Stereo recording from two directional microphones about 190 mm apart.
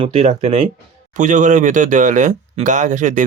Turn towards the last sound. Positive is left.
turn(degrees=-40)  # may be behind; listen again after turning